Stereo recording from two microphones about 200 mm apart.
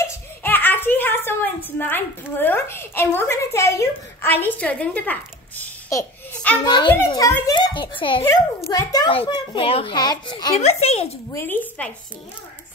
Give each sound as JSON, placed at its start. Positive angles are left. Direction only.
{"t": 0.1, "sound": "a child's voice", "side_deg": 10}
{"t": 6.6, "sound": "a child's voice", "side_deg": 20}
{"t": 11.3, "sound": "speech", "side_deg": 10}